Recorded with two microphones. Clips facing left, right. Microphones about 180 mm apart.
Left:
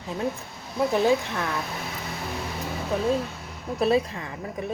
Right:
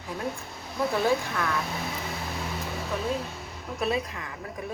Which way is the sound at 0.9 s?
20° left (ahead or behind).